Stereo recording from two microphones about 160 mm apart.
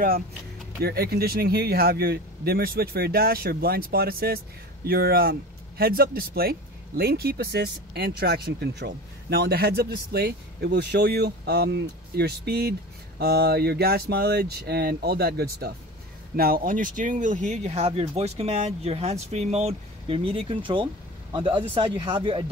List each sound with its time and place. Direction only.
0.7 s speech: 80° right
16.3 s speech: 65° right (ahead or behind); by 22.4 s 30° right (ahead or behind)